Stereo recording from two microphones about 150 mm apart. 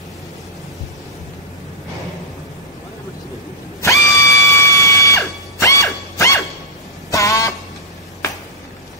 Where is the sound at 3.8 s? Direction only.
20° left (ahead or behind).